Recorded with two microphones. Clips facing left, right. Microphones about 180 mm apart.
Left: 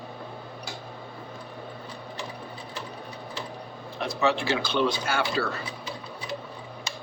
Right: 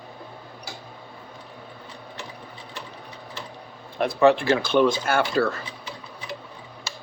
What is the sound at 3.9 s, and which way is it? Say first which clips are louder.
Speech: right 7 dB; 55° right (ahead or behind).